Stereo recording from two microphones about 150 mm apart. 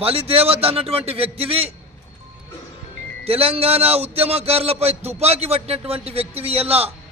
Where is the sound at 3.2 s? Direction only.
40° right (ahead or behind).